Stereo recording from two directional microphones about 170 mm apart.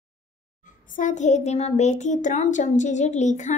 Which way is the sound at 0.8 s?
50° left (ahead or behind).